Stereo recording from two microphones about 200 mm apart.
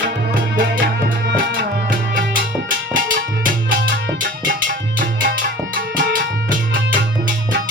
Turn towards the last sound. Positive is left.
turn(degrees=-45)  # may be behind; listen again after turning